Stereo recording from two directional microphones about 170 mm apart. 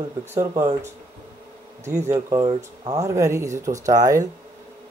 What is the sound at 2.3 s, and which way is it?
Speech, 20° right (ahead or behind).